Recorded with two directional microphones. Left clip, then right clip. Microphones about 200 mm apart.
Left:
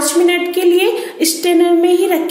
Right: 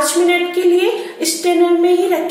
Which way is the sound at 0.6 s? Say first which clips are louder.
Left 1 dB; 50° left (ahead or behind).